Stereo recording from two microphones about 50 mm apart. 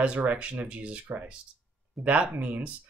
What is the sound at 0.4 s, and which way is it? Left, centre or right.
Speech, right.